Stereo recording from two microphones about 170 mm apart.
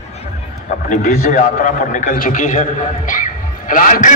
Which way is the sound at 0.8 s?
50° left (ahead or behind).